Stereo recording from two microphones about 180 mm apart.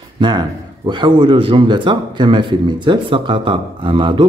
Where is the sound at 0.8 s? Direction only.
25° right (ahead or behind).